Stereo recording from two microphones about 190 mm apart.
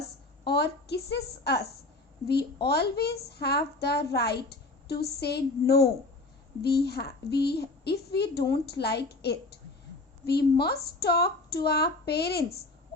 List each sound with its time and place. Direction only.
0.4 s a woman's voice: 60° left (ahead or behind)